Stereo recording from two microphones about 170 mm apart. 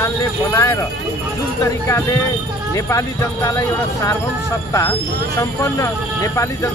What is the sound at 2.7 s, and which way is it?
Speech, 15° left (ahead or behind).